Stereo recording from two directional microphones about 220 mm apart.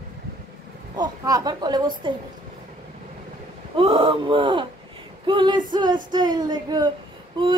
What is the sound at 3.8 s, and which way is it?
Female singing, 25° right (ahead or behind).